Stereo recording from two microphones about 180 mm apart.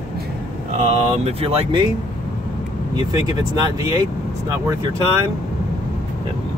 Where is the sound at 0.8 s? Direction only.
35° right (ahead or behind).